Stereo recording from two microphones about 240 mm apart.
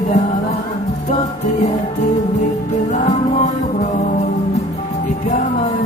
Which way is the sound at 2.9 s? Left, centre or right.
Left.